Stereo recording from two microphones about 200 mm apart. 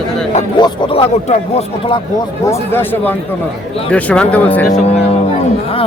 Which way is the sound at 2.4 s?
10° left (ahead or behind).